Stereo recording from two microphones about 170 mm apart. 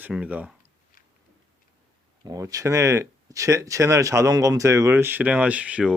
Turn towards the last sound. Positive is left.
turn(degrees=-5)  # may be behind; listen again after turning